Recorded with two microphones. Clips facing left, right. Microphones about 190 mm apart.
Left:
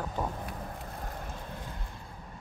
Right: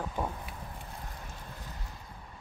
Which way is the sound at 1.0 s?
55° left (ahead or behind).